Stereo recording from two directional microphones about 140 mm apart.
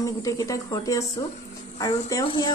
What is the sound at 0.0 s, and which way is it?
Speech, 25° left (ahead or behind).